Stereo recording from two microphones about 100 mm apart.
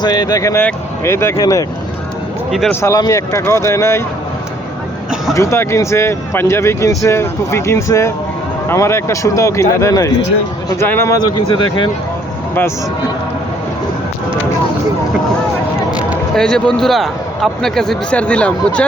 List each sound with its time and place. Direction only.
0.0 s speech: 40° left (ahead or behind)
2.8 s speech: 35° left (ahead or behind)
5.3 s speech: 30° left (ahead or behind)
10.8 s speech: 20° left (ahead or behind)
11.1 s speech: 50° left (ahead or behind)
16.3 s speech: 5° left (ahead or behind)